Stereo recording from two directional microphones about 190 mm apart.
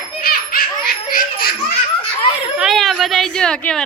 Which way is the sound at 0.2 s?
50° left (ahead or behind).